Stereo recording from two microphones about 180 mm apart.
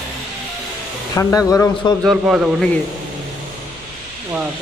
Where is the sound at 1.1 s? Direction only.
15° left (ahead or behind).